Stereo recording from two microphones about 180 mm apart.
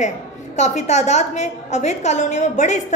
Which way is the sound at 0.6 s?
40° left (ahead or behind).